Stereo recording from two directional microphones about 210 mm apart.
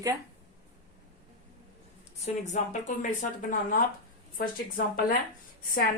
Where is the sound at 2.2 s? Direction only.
35° left (ahead or behind).